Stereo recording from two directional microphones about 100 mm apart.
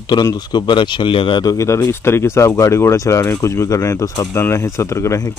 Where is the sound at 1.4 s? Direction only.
35° left (ahead or behind).